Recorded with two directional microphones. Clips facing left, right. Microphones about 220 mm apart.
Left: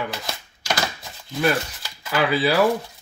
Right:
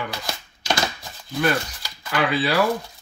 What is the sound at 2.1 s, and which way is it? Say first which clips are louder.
Speech: left 2 dB; 10° left (ahead or behind).